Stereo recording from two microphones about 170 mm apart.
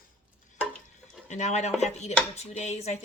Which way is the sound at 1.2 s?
45° left (ahead or behind).